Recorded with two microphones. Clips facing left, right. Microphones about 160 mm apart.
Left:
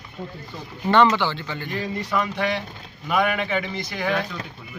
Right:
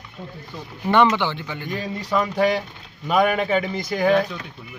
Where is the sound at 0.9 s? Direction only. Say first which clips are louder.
Even; 15° right (ahead or behind).